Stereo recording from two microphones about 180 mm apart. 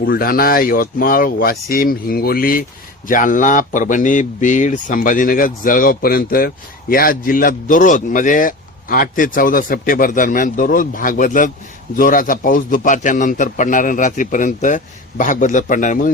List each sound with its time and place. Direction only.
0.0 s speech: 55° left (ahead or behind)